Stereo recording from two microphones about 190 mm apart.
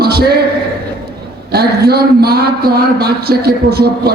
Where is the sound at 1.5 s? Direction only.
55° right (ahead or behind).